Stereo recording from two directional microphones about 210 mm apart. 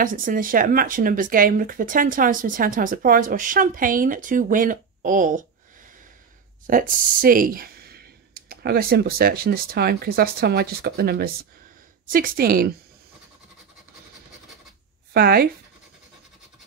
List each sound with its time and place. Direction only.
0.0 s speech: 40° right (ahead or behind)
6.6 s a woman's voice: 40° right (ahead or behind)
15.1 s a woman's voice: 45° right (ahead or behind)